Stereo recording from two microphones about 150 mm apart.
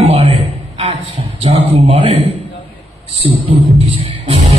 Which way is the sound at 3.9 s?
40° right (ahead or behind).